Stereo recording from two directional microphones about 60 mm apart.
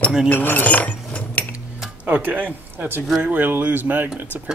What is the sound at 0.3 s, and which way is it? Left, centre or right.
Cutlery, left.